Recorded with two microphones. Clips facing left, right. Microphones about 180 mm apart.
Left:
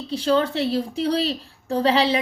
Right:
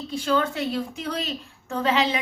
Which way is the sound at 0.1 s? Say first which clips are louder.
Left 4 dB; 30° left (ahead or behind).